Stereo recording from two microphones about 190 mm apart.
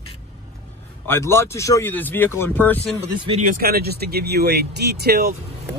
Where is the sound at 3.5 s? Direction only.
50° right (ahead or behind).